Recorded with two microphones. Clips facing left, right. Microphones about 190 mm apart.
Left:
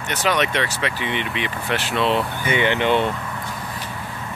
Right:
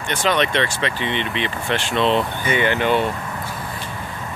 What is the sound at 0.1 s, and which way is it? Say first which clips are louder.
Speech: right 2 dB; 10° left (ahead or behind).